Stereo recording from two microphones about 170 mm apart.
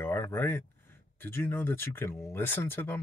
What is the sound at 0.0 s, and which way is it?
Speech, 15° left (ahead or behind).